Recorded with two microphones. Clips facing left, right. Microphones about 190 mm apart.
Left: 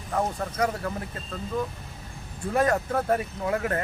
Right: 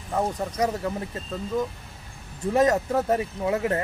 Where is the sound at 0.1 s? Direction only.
15° right (ahead or behind).